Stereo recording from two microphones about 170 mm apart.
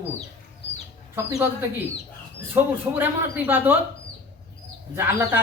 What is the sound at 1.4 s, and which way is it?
Speech, 10° right (ahead or behind).